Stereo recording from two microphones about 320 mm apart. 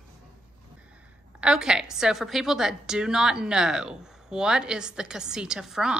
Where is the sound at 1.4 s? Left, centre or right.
Centre.